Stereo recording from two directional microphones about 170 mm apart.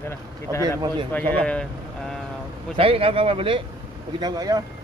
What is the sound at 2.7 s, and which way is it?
Speech, 35° right (ahead or behind).